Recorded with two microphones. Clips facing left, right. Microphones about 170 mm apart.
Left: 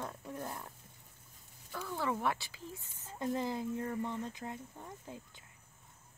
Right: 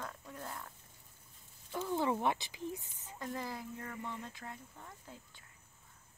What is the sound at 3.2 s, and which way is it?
Speech, 20° left (ahead or behind).